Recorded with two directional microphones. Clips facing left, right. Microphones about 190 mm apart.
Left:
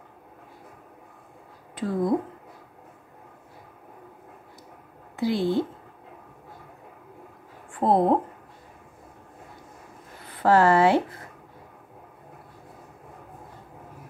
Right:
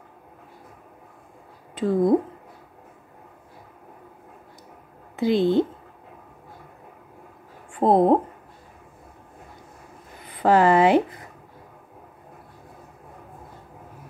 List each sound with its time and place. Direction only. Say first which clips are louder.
1.8 s speech: right 5 dB; 25° right (ahead or behind)
5.1 s a woman's voice: right 5 dB; 20° right (ahead or behind)
7.8 s speech: right 3 dB; 20° right (ahead or behind)
10.2 s speech: right 1 dB; 15° right (ahead or behind)